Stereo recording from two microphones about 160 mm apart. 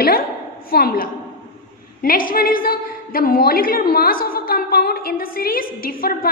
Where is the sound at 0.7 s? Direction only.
70° left (ahead or behind).